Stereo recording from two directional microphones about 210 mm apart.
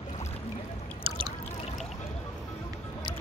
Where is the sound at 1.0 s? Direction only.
25° right (ahead or behind).